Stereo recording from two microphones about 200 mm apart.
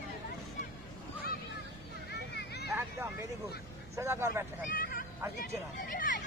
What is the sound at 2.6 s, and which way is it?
Vehicle, 10° right (ahead or behind).